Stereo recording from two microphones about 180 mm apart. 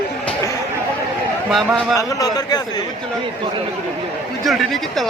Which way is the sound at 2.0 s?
20° left (ahead or behind).